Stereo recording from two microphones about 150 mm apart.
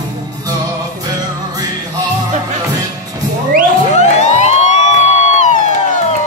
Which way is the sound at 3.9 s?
50° left (ahead or behind).